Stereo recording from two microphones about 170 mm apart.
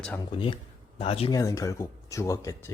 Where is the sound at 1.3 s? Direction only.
20° left (ahead or behind).